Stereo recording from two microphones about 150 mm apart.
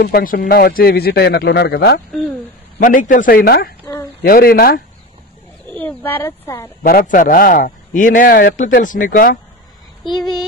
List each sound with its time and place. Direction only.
0.0 s speech: 80° left
2.8 s a man's voice: 65° left (ahead or behind); by 4.8 s 85° left
5.7 s speech: 10° left (ahead or behind)
6.8 s a man's voice: 70° left (ahead or behind)
10.1 s female singing: centre (ahead or behind)